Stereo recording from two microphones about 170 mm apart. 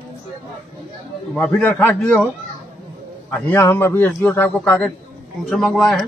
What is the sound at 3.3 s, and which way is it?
A man's voice, 10° left (ahead or behind).